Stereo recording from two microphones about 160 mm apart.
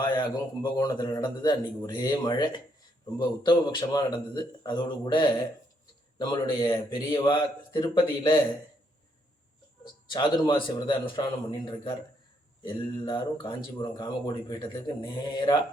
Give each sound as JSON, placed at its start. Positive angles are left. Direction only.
{"t": 0.0, "sound": "a man's voice", "side_deg": 25}
{"t": 9.8, "sound": "speech", "side_deg": 30}